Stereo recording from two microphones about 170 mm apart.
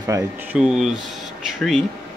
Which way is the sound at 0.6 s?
Centre (ahead or behind).